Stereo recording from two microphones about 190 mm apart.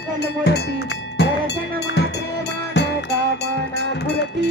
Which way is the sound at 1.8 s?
65° left (ahead or behind).